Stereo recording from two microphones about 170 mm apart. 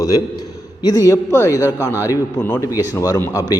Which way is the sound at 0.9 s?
20° left (ahead or behind).